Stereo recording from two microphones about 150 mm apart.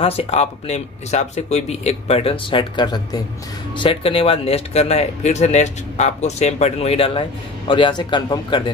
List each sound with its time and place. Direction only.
0.0 s speech: 40° left (ahead or behind)